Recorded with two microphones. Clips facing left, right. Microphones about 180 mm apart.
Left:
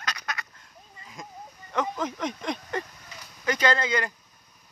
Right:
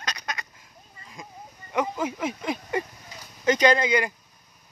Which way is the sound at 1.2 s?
Centre (ahead or behind).